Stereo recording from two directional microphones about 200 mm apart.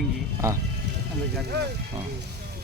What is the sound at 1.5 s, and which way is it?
Speech, 55° right (ahead or behind).